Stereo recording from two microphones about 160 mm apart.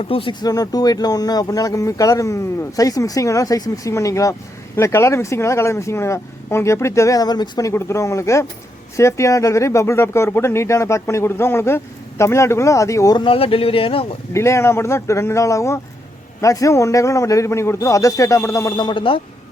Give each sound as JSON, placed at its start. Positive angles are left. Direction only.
{"t": 0.0, "sound": "speech", "side_deg": 35}
{"t": 7.7, "sound": "speech", "side_deg": 15}
{"t": 13.2, "sound": "speech", "side_deg": 35}
{"t": 14.3, "sound": "speech", "side_deg": 15}